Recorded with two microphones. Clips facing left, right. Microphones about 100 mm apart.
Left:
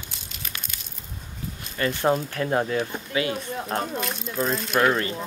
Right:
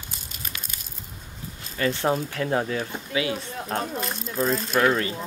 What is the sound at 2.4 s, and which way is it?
Speech, 35° left (ahead or behind).